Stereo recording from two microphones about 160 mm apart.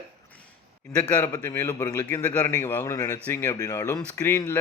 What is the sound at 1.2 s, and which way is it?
A man's voice, 20° left (ahead or behind).